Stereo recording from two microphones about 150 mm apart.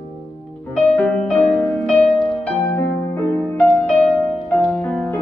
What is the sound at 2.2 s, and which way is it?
Music, 10° left (ahead or behind).